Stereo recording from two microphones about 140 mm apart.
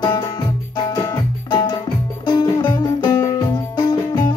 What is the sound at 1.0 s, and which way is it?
Music, 30° left (ahead or behind).